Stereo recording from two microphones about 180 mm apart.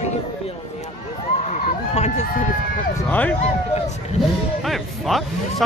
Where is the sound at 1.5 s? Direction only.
40° left (ahead or behind).